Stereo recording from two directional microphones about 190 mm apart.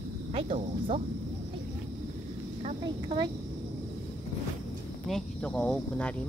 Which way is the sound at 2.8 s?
20° right (ahead or behind).